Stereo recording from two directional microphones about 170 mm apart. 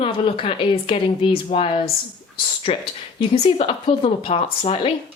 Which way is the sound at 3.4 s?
35° left (ahead or behind).